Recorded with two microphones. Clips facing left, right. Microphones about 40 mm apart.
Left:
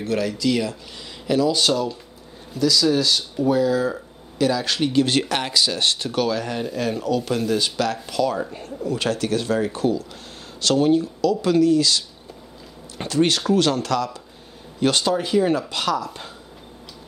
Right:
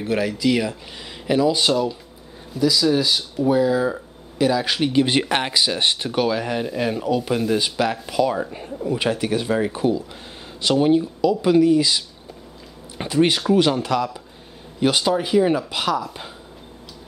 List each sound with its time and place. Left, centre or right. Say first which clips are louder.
0.0 s speech: right 1 dB; centre